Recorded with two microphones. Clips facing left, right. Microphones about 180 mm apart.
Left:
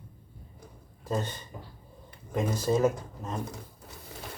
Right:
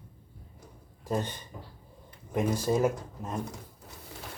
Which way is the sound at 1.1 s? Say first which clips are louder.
Even; 15° right (ahead or behind).